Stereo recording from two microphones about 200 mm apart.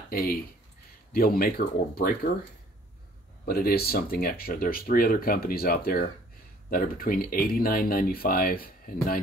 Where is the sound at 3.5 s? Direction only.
50° left (ahead or behind).